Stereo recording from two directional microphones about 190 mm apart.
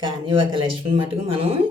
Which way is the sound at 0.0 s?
25° right (ahead or behind).